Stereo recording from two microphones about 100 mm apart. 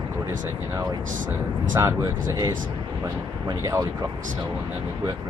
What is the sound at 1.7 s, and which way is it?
Speech, 35° right (ahead or behind).